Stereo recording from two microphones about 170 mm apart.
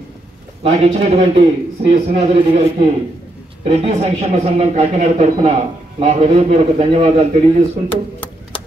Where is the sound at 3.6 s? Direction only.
35° right (ahead or behind).